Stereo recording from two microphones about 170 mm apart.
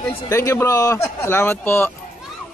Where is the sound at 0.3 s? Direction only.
20° left (ahead or behind).